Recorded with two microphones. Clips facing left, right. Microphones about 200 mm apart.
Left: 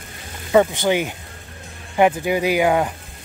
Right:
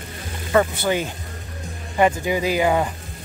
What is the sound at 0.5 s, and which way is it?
Speech, 15° left (ahead or behind).